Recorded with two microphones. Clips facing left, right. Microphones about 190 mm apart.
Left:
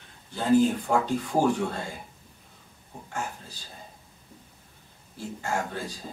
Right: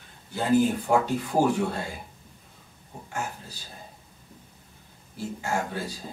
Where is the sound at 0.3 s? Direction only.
10° right (ahead or behind).